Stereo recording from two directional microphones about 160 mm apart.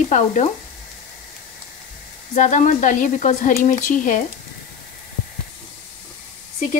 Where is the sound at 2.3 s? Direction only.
50° left (ahead or behind).